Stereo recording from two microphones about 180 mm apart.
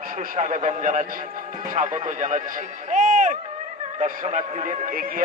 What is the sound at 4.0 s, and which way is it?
A man's voice, 40° right (ahead or behind).